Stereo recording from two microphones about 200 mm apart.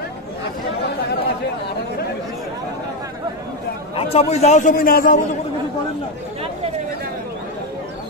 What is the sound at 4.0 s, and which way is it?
A man's voice, 30° left (ahead or behind).